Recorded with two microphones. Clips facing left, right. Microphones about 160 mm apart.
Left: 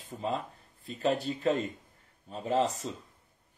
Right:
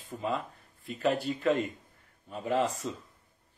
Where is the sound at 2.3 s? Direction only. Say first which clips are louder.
Even; 30° left (ahead or behind).